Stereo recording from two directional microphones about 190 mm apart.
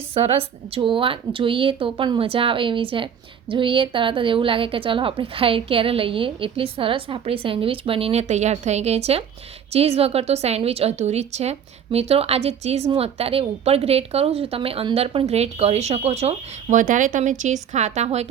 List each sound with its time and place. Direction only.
0.1 s a woman's voice: 30° right (ahead or behind)